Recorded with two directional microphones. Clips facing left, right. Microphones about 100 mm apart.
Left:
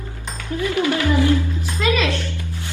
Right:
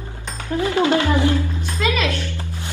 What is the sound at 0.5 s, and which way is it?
Speech, 30° right (ahead or behind).